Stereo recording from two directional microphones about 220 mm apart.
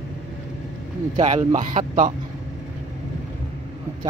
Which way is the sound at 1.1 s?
30° right (ahead or behind).